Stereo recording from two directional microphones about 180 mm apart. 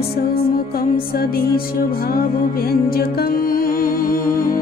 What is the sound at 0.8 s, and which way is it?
Music, 55° left (ahead or behind).